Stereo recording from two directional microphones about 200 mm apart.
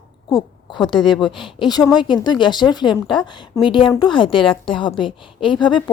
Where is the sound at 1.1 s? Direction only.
Centre (ahead or behind).